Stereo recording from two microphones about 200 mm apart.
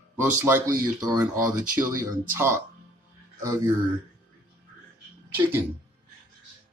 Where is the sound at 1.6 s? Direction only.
40° right (ahead or behind).